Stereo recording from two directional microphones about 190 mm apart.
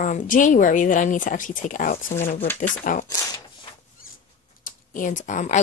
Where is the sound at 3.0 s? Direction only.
20° left (ahead or behind).